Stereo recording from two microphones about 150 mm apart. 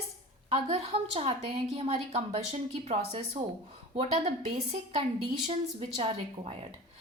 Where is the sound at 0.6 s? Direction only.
40° right (ahead or behind).